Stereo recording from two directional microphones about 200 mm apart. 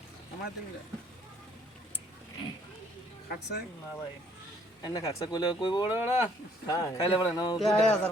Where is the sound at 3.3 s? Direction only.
55° left (ahead or behind).